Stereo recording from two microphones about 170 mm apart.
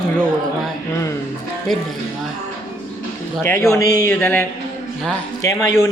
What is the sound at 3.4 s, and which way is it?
Speech, 15° left (ahead or behind).